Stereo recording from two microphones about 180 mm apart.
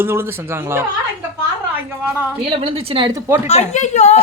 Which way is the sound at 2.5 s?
30° right (ahead or behind).